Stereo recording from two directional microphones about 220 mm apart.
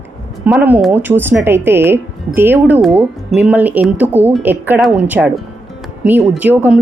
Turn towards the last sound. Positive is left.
turn(degrees=-10)  # may be behind; listen again after turning